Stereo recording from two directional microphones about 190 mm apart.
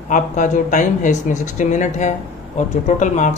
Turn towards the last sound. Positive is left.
turn(degrees=40)  # may be behind; listen again after turning